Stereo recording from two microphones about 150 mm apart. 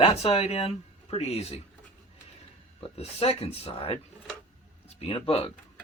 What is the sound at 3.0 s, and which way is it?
Speech, 40° left (ahead or behind).